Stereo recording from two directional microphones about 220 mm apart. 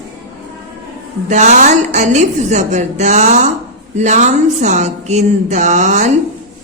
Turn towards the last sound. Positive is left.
turn(degrees=-35)  # may be behind; listen again after turning